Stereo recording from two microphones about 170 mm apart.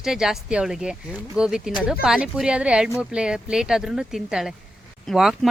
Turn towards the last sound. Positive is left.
turn(degrees=0)  # may be behind; listen again after turning